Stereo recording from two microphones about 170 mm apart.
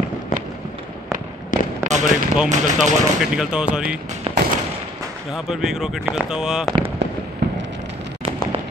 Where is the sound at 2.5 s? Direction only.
45° right (ahead or behind).